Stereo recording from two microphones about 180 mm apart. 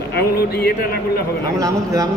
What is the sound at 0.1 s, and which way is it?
Speech, 60° left (ahead or behind).